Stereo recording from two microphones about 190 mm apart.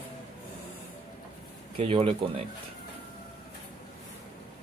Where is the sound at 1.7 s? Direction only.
30° right (ahead or behind).